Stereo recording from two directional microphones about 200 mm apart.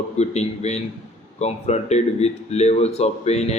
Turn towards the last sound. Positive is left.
turn(degrees=30)  # may be behind; listen again after turning